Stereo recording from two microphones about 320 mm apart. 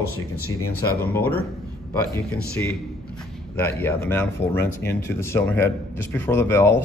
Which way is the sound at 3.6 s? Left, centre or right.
Centre.